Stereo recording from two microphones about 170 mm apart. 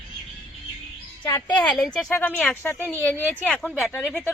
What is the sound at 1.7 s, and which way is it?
Speech, centre (ahead or behind).